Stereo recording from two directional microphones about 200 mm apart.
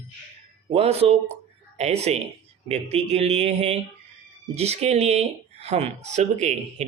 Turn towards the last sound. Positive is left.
turn(degrees=-35)  # may be behind; listen again after turning